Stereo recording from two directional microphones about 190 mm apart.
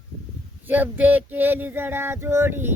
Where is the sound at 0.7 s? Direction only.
10° right (ahead or behind).